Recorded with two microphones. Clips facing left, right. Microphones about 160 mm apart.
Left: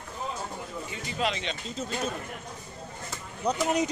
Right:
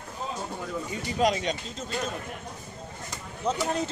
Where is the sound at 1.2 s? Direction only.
45° right (ahead or behind).